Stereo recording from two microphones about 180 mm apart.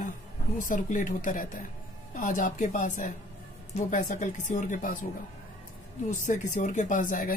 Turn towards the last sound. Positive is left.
turn(degrees=50)  # may be behind; listen again after turning